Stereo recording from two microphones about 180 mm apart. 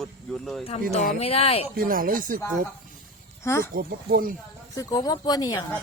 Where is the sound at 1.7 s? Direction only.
50° right (ahead or behind).